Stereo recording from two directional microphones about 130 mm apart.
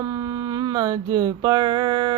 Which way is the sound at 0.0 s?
25° right (ahead or behind).